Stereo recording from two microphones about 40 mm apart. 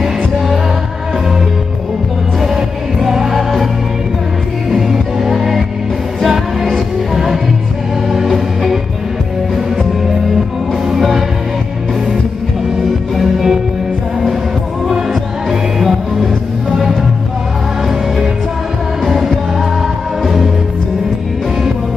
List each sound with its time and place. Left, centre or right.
2.4 s music: centre
4.6 s music: centre
10.9 s music: centre
13.1 s music: centre
15.8 s music: centre
19.0 s music: centre